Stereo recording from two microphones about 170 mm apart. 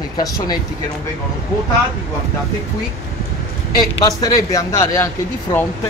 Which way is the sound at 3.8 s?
20° left (ahead or behind).